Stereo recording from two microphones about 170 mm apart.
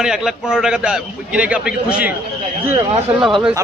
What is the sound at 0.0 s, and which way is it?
A man's voice, 5° right (ahead or behind).